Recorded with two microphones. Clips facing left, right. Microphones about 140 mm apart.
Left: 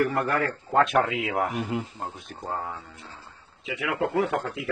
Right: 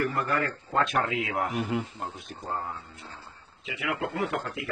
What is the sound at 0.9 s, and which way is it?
Speech, 50° left (ahead or behind).